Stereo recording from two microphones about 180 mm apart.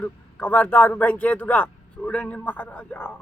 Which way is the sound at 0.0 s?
10° left (ahead or behind).